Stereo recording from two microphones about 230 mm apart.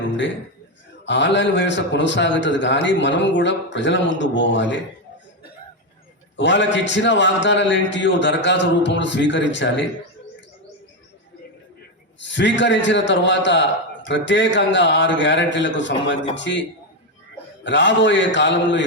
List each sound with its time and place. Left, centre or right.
1.0 s a man's voice: left
6.3 s a man's voice: left
12.2 s a man's voice: left